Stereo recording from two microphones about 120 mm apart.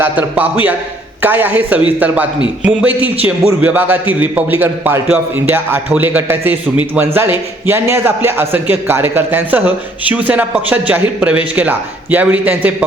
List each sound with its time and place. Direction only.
0.0 s a man's voice: 15° right (ahead or behind)